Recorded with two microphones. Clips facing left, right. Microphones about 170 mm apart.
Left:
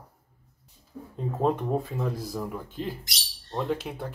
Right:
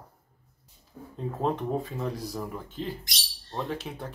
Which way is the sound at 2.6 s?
10° left (ahead or behind).